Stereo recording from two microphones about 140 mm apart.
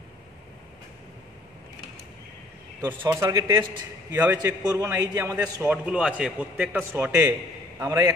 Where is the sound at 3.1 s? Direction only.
25° right (ahead or behind).